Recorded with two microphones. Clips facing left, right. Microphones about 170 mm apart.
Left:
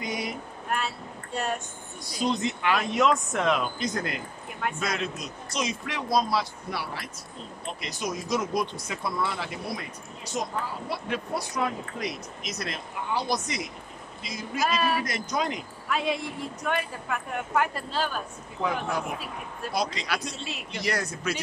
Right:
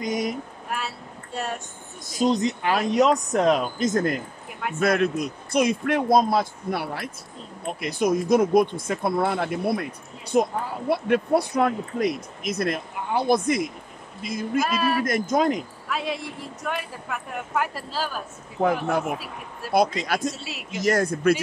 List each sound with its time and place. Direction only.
0.0 s speech: 45° right (ahead or behind)
0.3 s speech: centre (ahead or behind)
2.0 s a woman's voice: 45° right (ahead or behind)
4.7 s speech: 55° right (ahead or behind)
14.6 s speech: centre (ahead or behind)
15.0 s speech: 50° right (ahead or behind)
15.9 s speech: centre (ahead or behind)
18.6 s speech: 55° right (ahead or behind)
20.3 s speech: 5° right (ahead or behind)
20.8 s speech: 50° right (ahead or behind)